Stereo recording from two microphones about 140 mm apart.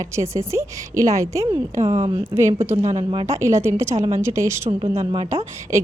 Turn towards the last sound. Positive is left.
turn(degrees=-20)  # may be behind; listen again after turning